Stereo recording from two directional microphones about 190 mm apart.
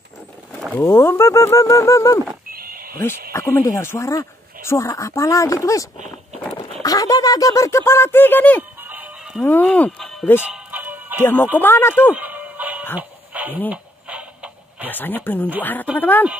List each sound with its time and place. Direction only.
0.7 s speech: 15° left (ahead or behind)
2.5 s a sound: 50° right (ahead or behind)
3.3 s speech: 15° left (ahead or behind)
8.8 s music: 10° right (ahead or behind)
9.4 s speech: 10° left (ahead or behind)
10.4 s music: 10° right (ahead or behind)
11.5 s speech: 10° left (ahead or behind)
12.1 s music: 10° right (ahead or behind)
13.7 s a sound: 5° right (ahead or behind)
14.9 s speech: 10° left (ahead or behind)